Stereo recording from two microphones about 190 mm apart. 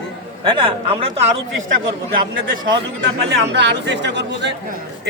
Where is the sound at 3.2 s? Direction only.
65° right (ahead or behind).